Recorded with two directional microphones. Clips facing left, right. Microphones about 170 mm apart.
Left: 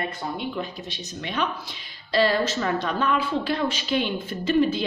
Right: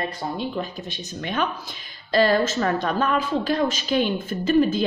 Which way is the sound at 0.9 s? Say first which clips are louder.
Right 3 dB; 50° right (ahead or behind).